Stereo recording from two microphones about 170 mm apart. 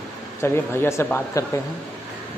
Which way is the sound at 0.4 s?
15° left (ahead or behind).